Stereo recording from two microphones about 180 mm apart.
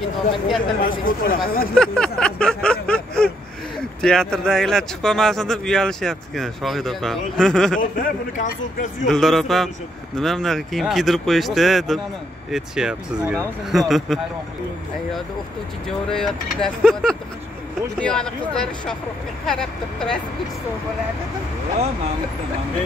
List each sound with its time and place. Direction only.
0.7 s a man's voice: 50° left (ahead or behind)
1.8 s a sound: 5° left (ahead or behind)
4.0 s speech: 5° left (ahead or behind)
7.8 s a man's voice: 50° left (ahead or behind)
9.0 s speech: centre (ahead or behind)
16.1 s speech: 5° left (ahead or behind)